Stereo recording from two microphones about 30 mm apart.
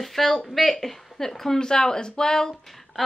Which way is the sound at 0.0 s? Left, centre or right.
Centre.